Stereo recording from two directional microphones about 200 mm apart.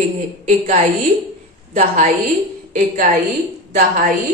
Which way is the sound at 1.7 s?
35° right (ahead or behind).